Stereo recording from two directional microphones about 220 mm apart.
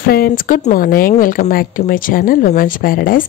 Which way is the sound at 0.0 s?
40° left (ahead or behind).